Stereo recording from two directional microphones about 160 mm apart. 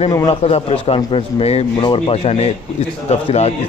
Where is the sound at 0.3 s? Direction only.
35° left (ahead or behind).